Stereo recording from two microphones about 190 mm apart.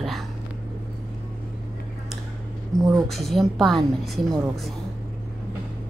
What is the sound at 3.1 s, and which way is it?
A woman's voice, centre (ahead or behind).